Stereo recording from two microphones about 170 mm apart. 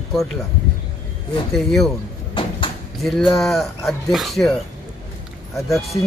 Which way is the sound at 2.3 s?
30° left (ahead or behind).